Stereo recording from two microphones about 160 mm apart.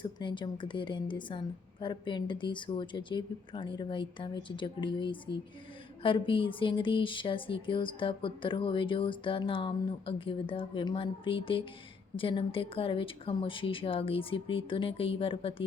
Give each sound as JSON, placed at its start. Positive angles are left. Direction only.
{"t": 0.0, "sound": "speech", "side_deg": 30}